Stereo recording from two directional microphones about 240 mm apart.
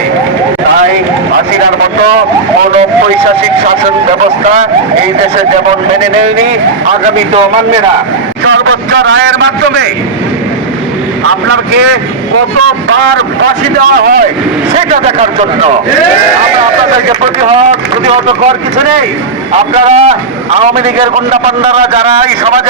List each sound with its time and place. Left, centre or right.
8.4 s a man's voice: right
14.0 s speech: right
14.8 s a man's voice: right
17.5 s a man's voice: right
19.7 s a man's voice: right